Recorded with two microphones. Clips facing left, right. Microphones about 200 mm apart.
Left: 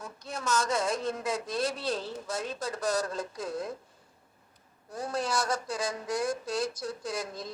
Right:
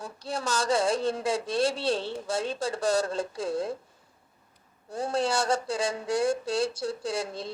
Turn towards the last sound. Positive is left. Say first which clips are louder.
# right 4 dB
turn(degrees=-30)  # may be behind; listen again after turning